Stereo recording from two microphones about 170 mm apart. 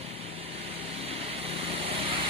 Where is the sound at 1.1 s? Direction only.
35° right (ahead or behind).